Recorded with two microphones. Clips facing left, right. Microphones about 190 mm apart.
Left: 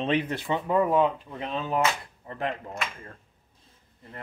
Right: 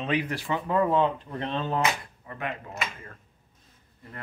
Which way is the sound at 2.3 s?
30° left (ahead or behind).